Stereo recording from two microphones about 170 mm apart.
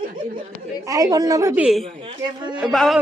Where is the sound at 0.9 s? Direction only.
20° right (ahead or behind).